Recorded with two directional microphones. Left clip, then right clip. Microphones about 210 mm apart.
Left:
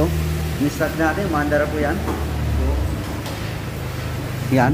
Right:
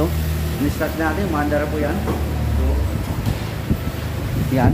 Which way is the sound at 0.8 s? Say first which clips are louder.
Left 2 dB; 5° left (ahead or behind).